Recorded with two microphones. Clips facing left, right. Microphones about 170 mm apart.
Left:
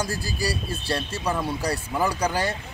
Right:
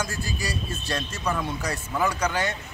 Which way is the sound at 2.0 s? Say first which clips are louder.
Left 1 dB; 35° left (ahead or behind).